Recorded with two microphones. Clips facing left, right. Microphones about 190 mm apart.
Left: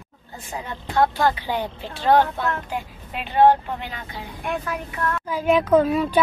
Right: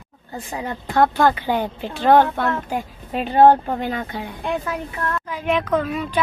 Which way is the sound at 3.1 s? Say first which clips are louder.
Right 3 dB; 40° right (ahead or behind).